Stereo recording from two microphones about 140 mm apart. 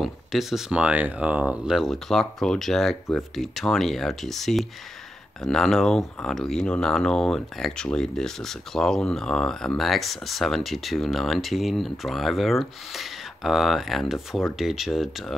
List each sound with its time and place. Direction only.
0.0 s speech: centre (ahead or behind)